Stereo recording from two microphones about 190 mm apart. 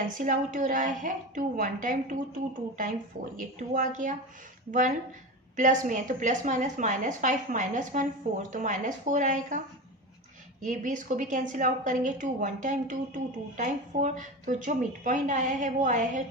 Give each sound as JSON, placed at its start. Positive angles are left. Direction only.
{"t": 0.2, "sound": "a woman's voice", "side_deg": -45}
{"t": 5.5, "sound": "a woman's voice", "side_deg": -40}
{"t": 10.6, "sound": "a woman's voice", "side_deg": -40}